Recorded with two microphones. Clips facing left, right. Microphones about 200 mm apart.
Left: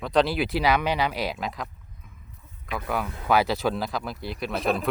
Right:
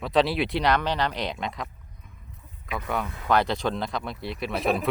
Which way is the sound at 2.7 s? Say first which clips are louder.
Left 1 dB; centre (ahead or behind).